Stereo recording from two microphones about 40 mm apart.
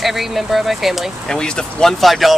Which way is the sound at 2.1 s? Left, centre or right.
Centre.